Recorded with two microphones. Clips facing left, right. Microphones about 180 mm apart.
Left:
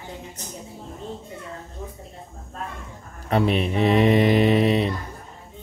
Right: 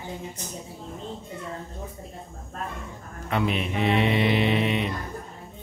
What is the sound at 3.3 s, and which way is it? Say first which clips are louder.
Mantra: left 5 dB; 35° left (ahead or behind).